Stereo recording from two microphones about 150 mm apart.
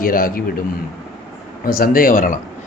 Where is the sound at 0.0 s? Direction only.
70° left (ahead or behind).